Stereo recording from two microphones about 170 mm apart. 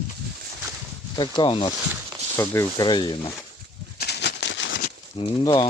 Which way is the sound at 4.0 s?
80° left.